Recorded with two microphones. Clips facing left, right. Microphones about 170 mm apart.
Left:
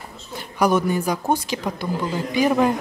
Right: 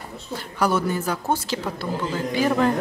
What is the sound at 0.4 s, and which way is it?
A woman's voice, 15° left (ahead or behind).